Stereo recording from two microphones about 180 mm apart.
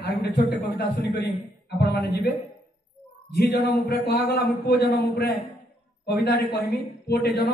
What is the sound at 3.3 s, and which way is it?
A man's voice, 60° left (ahead or behind).